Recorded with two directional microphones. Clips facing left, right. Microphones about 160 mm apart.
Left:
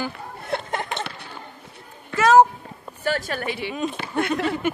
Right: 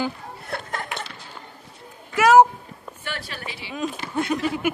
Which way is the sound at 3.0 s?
45° left (ahead or behind).